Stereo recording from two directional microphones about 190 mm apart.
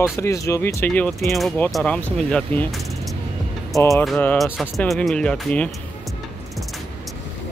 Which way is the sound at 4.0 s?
5° left (ahead or behind).